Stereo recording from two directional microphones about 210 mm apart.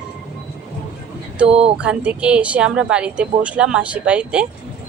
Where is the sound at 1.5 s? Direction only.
30° right (ahead or behind).